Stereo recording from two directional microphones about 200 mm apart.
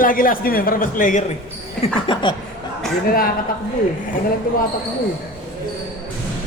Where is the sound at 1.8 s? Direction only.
25° left (ahead or behind).